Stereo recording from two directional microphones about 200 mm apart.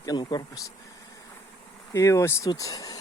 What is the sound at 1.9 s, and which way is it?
Speech, 15° left (ahead or behind).